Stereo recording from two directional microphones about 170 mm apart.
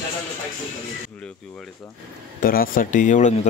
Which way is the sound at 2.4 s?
55° left (ahead or behind).